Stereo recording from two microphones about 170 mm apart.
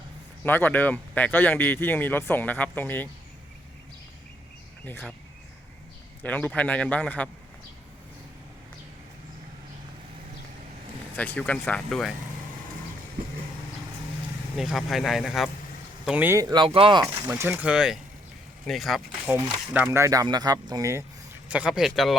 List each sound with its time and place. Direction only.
0.4 s speech: 10° left (ahead or behind)
4.9 s speech: 10° left (ahead or behind)
6.2 s speech: 10° left (ahead or behind)
11.2 s speech: 10° left (ahead or behind)
14.5 s speech: centre (ahead or behind); by 17.0 s 30° right (ahead or behind)
17.0 s speech: 15° right (ahead or behind)
21.5 s speech: 5° right (ahead or behind)